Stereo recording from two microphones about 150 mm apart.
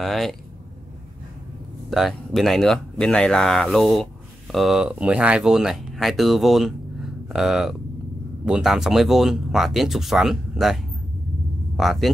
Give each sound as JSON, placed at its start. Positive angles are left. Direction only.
{"t": 0.0, "sound": "speech", "side_deg": 0}
{"t": 1.9, "sound": "speech", "side_deg": 0}